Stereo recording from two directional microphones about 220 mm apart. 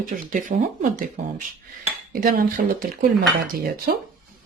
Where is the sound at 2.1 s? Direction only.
40° right (ahead or behind).